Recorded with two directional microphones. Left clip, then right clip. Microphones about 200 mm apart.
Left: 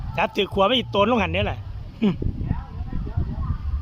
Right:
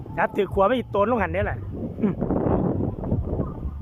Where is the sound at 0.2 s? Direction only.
5° left (ahead or behind).